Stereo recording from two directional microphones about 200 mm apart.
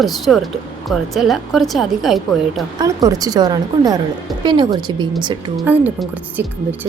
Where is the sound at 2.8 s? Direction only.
20° right (ahead or behind).